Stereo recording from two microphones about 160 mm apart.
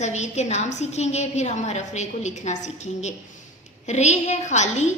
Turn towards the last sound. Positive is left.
turn(degrees=45)  # may be behind; listen again after turning